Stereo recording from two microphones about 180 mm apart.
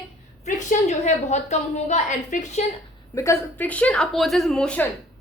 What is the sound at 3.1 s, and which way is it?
Speech, 15° left (ahead or behind).